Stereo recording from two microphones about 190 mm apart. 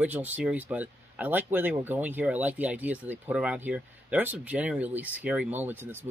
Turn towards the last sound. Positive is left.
turn(degrees=-10)  # may be behind; listen again after turning